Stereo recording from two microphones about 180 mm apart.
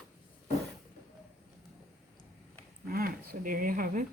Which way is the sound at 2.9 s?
55° right (ahead or behind).